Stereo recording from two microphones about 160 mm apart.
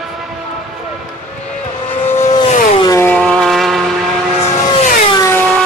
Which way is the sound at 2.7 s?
25° left (ahead or behind).